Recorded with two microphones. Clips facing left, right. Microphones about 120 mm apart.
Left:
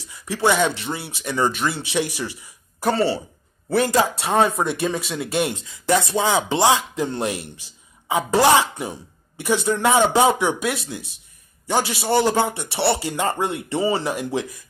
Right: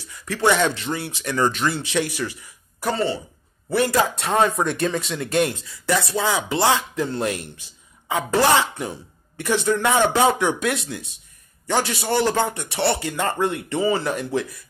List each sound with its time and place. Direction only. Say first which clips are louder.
0.1 s speech: even; 15° left (ahead or behind)
0.7 s speech: right 2 dB; 20° left (ahead or behind)
2.9 s speech: left 3 dB; 35° left (ahead or behind)
3.8 s a man's voice: right 1 dB; 20° left (ahead or behind)